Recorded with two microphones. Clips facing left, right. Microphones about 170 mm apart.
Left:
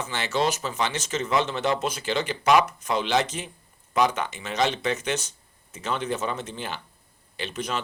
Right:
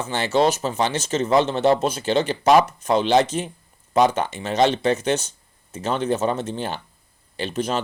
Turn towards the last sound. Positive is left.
turn(degrees=-30)  # may be behind; listen again after turning